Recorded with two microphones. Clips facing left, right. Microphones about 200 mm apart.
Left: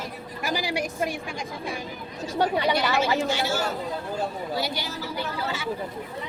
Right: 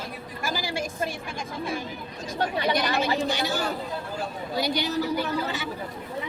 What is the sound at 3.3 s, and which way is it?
Speech, 15° right (ahead or behind).